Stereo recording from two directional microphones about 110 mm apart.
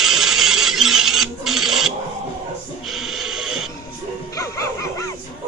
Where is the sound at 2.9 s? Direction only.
5° right (ahead or behind).